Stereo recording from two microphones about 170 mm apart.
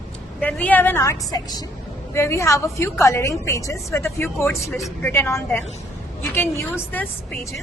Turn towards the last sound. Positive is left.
turn(degrees=10)  # may be behind; listen again after turning